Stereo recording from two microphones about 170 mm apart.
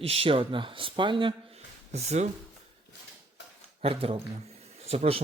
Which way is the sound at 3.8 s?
35° right (ahead or behind).